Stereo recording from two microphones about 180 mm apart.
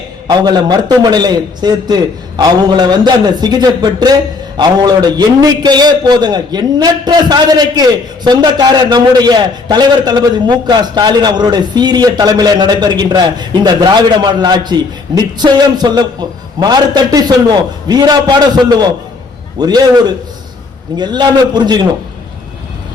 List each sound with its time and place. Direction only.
0.3 s a man's voice: 25° right (ahead or behind)